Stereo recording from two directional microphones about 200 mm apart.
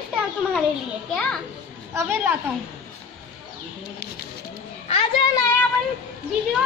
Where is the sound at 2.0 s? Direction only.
10° right (ahead or behind).